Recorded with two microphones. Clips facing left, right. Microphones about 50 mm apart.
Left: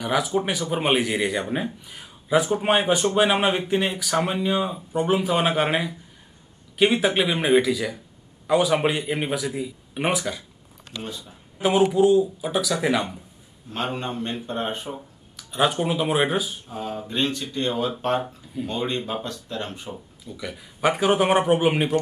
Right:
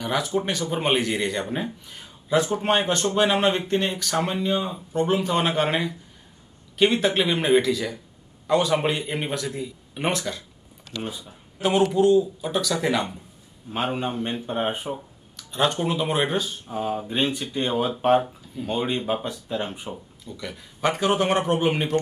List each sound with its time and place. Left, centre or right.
0.0 s speech: centre
11.0 s speech: centre
11.9 s speech: centre
13.7 s speech: centre
15.3 s speech: centre
16.6 s speech: centre
20.2 s speech: centre